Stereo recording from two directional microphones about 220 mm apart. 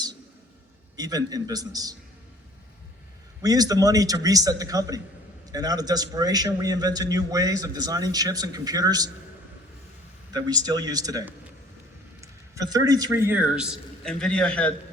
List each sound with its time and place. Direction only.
0.9 s a man's voice: 15° right (ahead or behind)
3.4 s a man's voice: 15° right (ahead or behind)
10.3 s a man's voice: 20° right (ahead or behind); by 14.7 s 5° left (ahead or behind)